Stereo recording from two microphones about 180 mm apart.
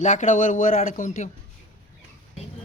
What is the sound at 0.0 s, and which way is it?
A man's voice, 40° left (ahead or behind).